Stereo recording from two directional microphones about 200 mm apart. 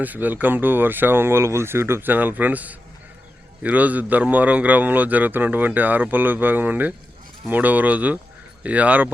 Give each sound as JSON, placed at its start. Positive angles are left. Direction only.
{"t": 0.0, "sound": "a man's voice", "side_deg": -10}